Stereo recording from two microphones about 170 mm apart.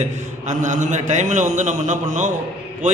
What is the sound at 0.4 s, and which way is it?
A man's voice, 45° right (ahead or behind).